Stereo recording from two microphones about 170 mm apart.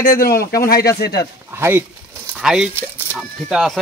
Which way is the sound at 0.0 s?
60° left (ahead or behind).